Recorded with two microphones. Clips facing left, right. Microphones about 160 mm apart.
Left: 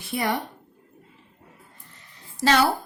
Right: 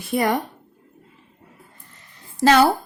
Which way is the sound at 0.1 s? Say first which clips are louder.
Right 5 dB; 45° right (ahead or behind).